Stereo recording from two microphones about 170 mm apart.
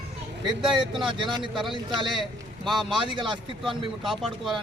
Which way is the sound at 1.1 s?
30° right (ahead or behind).